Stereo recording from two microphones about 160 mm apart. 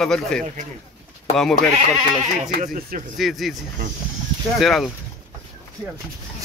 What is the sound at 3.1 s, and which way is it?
Speech, centre (ahead or behind).